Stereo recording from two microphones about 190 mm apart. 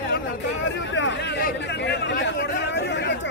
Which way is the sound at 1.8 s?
65° left (ahead or behind).